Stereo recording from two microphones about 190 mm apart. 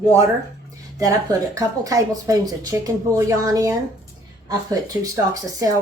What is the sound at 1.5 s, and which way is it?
A woman's voice, 20° right (ahead or behind).